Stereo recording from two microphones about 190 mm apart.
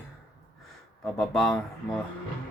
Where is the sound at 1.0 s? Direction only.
Centre (ahead or behind).